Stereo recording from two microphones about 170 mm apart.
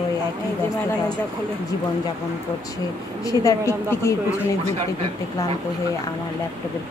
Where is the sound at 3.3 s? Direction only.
15° left (ahead or behind).